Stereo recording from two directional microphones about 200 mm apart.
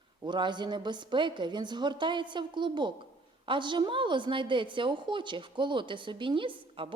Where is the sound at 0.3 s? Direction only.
20° right (ahead or behind).